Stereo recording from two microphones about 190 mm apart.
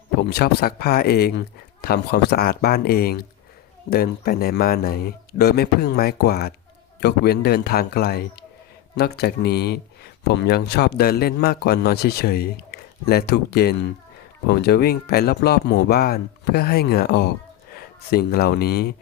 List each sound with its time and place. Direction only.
0.3 s a man's voice: 55° left (ahead or behind)